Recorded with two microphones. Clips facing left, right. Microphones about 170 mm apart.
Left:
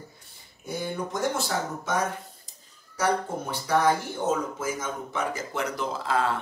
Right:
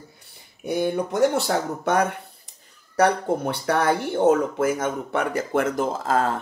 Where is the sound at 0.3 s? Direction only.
65° right (ahead or behind).